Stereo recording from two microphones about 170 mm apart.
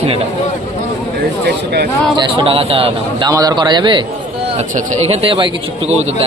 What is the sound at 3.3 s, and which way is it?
Speech, 20° right (ahead or behind).